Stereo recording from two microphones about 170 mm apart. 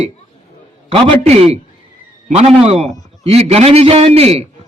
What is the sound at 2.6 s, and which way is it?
A man's voice, 40° right (ahead or behind).